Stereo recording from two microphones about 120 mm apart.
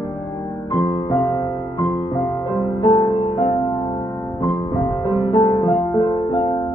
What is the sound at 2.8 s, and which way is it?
Music, 35° left (ahead or behind).